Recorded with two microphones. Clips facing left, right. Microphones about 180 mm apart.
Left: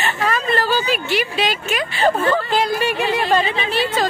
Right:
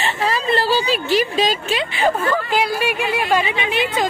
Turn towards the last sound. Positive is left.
turn(degrees=-15)  # may be behind; listen again after turning